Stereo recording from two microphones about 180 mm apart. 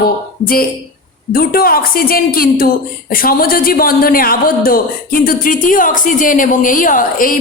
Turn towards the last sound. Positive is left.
turn(degrees=50)  # may be behind; listen again after turning